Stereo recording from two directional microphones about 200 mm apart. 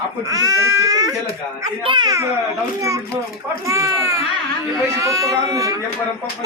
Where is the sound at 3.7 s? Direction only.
15° right (ahead or behind).